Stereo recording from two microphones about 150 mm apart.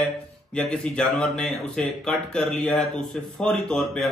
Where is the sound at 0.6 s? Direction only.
5° left (ahead or behind).